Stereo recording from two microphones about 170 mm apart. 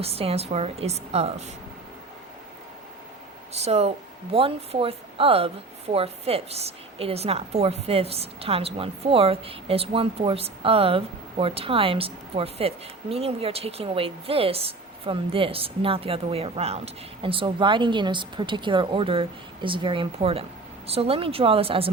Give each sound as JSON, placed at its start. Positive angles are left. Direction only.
{"t": 0.0, "sound": "a woman's voice", "side_deg": -35}
{"t": 3.5, "sound": "a woman's voice", "side_deg": -40}